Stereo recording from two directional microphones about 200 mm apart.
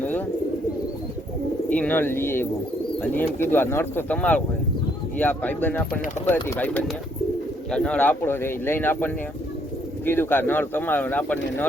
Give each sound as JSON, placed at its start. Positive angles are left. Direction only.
{"t": 1.7, "sound": "speech", "side_deg": 5}